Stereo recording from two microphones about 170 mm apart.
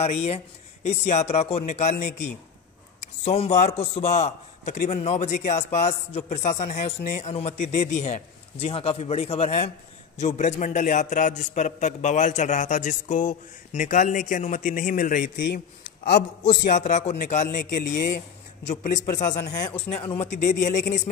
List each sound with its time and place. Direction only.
0.0 s a man's voice: 40° left (ahead or behind); by 15.6 s 65° left (ahead or behind)
16.6 s a man's voice: 45° left (ahead or behind)
17.8 s speech: 65° left (ahead or behind)
18.6 s a man's voice: 45° left (ahead or behind)